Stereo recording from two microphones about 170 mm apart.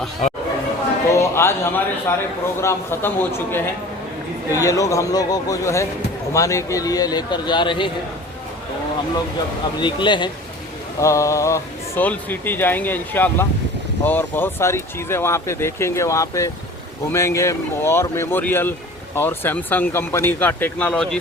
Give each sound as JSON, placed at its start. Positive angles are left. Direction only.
{"t": 1.1, "sound": "a man's voice", "side_deg": 15}
{"t": 9.8, "sound": "a man's voice", "side_deg": 25}